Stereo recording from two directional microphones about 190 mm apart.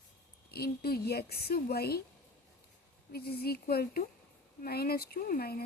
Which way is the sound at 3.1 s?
55° left (ahead or behind).